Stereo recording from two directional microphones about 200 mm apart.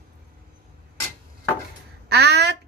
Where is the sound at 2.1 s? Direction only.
55° right (ahead or behind).